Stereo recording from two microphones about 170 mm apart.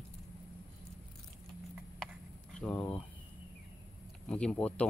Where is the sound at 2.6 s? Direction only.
10° left (ahead or behind).